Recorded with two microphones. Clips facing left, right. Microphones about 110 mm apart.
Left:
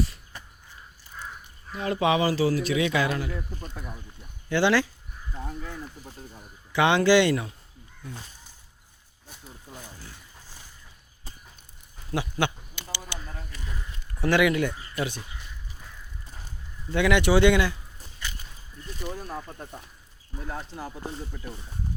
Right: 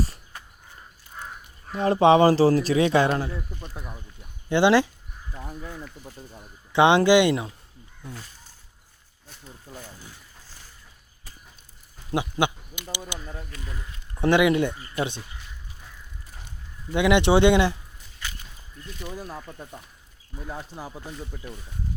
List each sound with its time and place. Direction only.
1.7 s speech: 35° right (ahead or behind)
4.4 s speech: 20° right (ahead or behind)
6.7 s speech: 20° right (ahead or behind)
12.1 s speech: 15° right (ahead or behind)
13.1 s a sound: 20° right (ahead or behind)
14.2 s speech: 20° right (ahead or behind)
16.9 s speech: 20° right (ahead or behind)
20.4 s speech: 10° right (ahead or behind)